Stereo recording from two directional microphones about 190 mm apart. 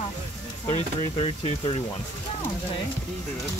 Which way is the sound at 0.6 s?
30° left (ahead or behind).